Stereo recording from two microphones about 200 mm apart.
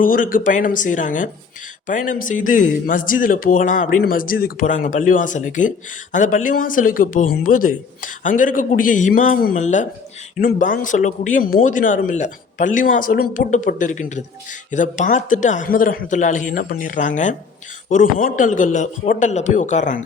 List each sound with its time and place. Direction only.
0.0 s speech: 45° left (ahead or behind)